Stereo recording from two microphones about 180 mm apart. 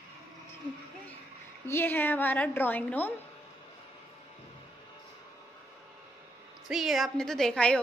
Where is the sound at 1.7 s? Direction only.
10° left (ahead or behind).